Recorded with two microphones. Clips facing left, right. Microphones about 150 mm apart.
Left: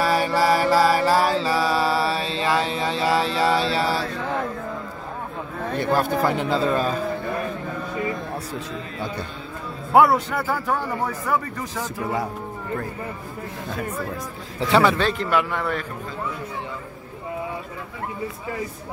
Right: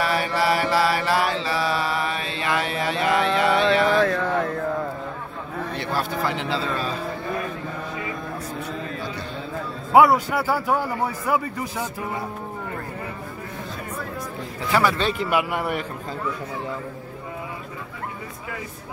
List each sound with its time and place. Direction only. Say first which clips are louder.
0.0 s mantra: left 3 dB; 40° left (ahead or behind)
5.8 s speech: left 6 dB; 50° left (ahead or behind)
9.9 s a man's voice: right 1 dB; centre (ahead or behind)
14.7 s a man's voice: left 3 dB; 25° left (ahead or behind)
15.0 s a man's voice: left 1 dB; 10° right (ahead or behind)